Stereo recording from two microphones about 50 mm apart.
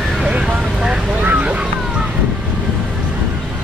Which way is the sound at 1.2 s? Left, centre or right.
Right.